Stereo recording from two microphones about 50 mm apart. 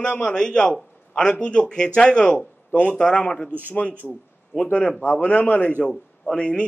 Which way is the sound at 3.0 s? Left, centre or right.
Centre.